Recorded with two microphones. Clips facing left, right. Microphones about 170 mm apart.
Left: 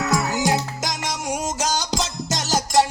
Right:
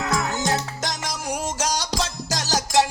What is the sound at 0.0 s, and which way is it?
Music, 5° left (ahead or behind).